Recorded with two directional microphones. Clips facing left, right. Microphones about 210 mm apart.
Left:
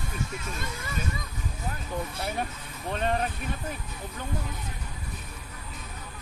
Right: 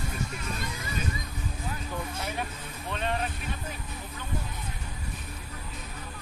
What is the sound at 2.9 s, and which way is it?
Speech, 45° left (ahead or behind).